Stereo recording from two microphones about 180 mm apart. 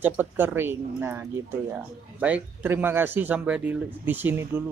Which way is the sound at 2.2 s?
10° right (ahead or behind).